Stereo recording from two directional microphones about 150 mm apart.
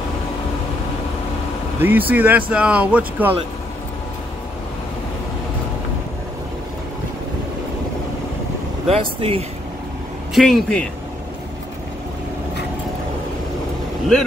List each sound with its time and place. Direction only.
1.8 s speech: 10° right (ahead or behind)
8.8 s speech: 40° right (ahead or behind)
10.3 s speech: centre (ahead or behind)